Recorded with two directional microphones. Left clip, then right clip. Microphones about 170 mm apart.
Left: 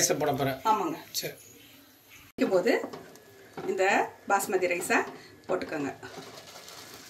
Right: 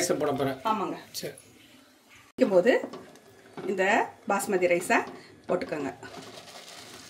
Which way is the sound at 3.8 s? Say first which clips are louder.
Right 1 dB; 80° right.